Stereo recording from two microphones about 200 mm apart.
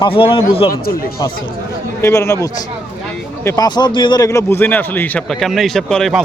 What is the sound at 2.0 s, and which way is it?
Speech, 15° left (ahead or behind).